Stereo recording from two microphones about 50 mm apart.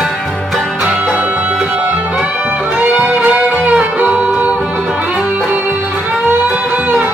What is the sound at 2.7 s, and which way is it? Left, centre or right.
Music, right.